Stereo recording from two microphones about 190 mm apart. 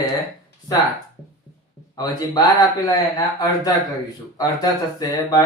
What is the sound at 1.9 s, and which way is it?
Speech, 20° left (ahead or behind).